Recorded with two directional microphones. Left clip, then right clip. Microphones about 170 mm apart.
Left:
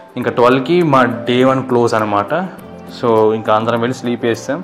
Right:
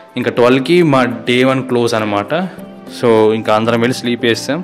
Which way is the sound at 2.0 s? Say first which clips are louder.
Left 1 dB; 30° right (ahead or behind).